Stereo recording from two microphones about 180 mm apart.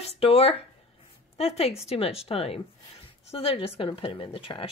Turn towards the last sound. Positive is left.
turn(degrees=30)  # may be behind; listen again after turning